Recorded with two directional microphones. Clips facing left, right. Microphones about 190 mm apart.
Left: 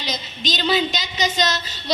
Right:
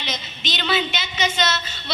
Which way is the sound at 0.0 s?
40° left (ahead or behind).